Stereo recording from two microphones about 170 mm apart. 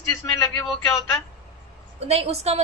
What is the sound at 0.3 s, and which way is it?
Speech, 20° left (ahead or behind).